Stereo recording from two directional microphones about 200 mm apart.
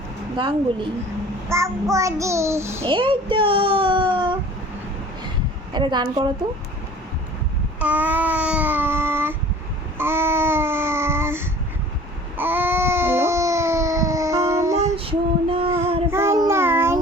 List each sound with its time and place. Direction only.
1.5 s child singing: 15° right (ahead or behind)
2.8 s a child's voice: 25° right (ahead or behind)
5.7 s a child's voice: 25° right (ahead or behind)
7.8 s babbling: 5° right (ahead or behind)
12.4 s baby cry: 10° right (ahead or behind)
14.9 s female singing: 30° right (ahead or behind)
16.0 s child singing: 10° right (ahead or behind)